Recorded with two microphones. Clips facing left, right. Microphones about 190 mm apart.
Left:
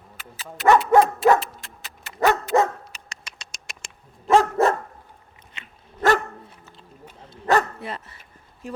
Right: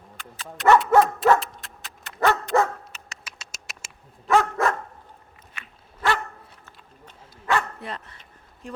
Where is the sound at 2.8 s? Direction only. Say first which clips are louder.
Left 1 dB; centre (ahead or behind).